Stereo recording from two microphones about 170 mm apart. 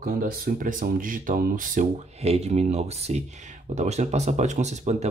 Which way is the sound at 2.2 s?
40° right (ahead or behind).